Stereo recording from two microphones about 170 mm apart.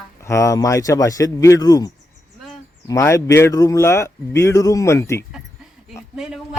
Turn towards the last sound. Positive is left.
turn(degrees=0)  # may be behind; listen again after turning